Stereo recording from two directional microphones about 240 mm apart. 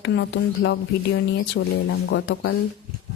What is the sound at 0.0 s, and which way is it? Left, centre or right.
Speech, left.